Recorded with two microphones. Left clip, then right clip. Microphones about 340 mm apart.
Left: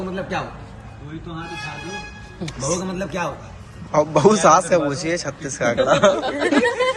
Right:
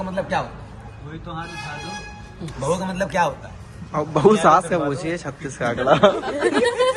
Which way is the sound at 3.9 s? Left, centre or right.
Centre.